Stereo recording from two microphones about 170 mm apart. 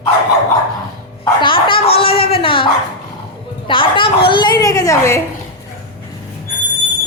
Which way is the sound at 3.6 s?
30° left (ahead or behind).